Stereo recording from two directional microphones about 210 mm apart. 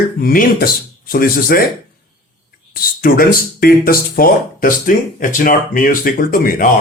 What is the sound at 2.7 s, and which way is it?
Speech, 45° left (ahead or behind).